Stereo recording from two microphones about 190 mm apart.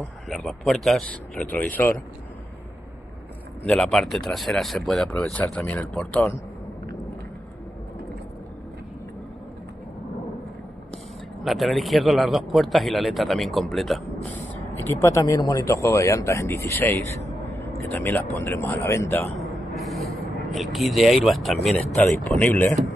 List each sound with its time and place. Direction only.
0.3 s speech: centre (ahead or behind)
3.6 s speech: 5° left (ahead or behind)
11.4 s speech: centre (ahead or behind)
14.9 s speech: 15° left (ahead or behind)
17.6 s vehicle: 10° left (ahead or behind)
18.3 s speech: 15° left (ahead or behind)
19.5 s vehicle: centre (ahead or behind)
21.6 s speech: 5° left (ahead or behind)